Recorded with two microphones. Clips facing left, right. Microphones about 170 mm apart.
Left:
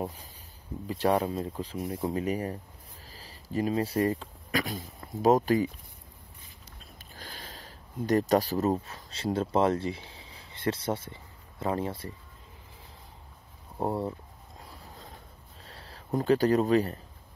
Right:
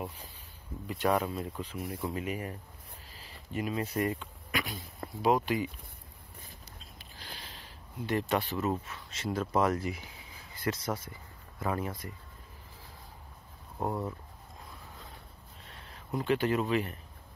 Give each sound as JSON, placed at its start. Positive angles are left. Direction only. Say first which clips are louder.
{"t": 0.8, "sound": "speech", "louder": "left 3 dB", "side_deg": 35}
{"t": 7.2, "sound": "a sound", "louder": "left 3 dB", "side_deg": 45}
{"t": 8.8, "sound": "speech", "louder": "left 4 dB", "side_deg": 35}
{"t": 13.7, "sound": "speech", "louder": "left 4 dB", "side_deg": 30}
{"t": 15.6, "sound": "speech", "louder": "left 3 dB", "side_deg": 35}